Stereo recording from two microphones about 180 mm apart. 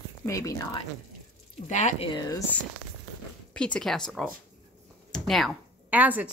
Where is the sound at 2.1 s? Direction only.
20° left (ahead or behind).